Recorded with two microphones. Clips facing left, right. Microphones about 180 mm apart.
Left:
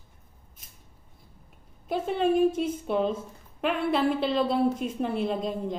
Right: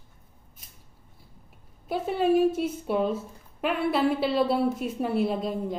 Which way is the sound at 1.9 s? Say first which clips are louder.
Right 1 dB; 5° right (ahead or behind).